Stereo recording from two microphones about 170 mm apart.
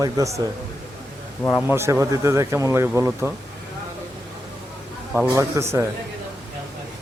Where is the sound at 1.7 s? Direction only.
15° right (ahead or behind).